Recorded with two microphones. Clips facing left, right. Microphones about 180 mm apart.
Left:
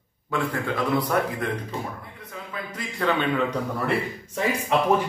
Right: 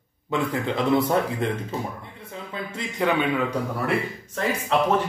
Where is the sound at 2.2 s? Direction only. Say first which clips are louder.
Right 4 dB; 25° right (ahead or behind).